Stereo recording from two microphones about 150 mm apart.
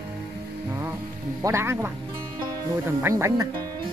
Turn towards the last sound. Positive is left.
turn(degrees=-20)  # may be behind; listen again after turning